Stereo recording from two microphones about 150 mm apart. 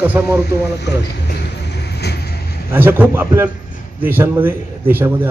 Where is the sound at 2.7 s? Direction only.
15° right (ahead or behind).